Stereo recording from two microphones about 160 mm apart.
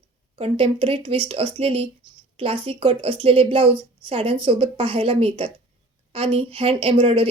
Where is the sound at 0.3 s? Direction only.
35° right (ahead or behind).